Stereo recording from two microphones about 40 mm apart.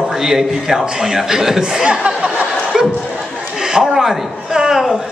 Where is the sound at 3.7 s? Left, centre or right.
Centre.